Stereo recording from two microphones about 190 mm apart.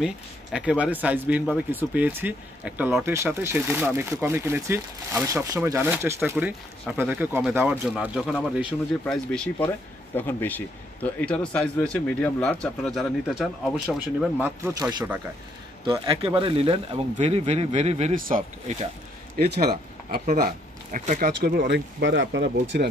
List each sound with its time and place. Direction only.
0.0 s speech: 5° right (ahead or behind)
14.4 s speech: 15° right (ahead or behind); by 21.3 s 40° right (ahead or behind)
21.4 s speech: 55° right (ahead or behind)